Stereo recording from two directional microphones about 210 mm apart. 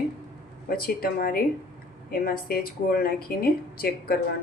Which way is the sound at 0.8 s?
45° left (ahead or behind).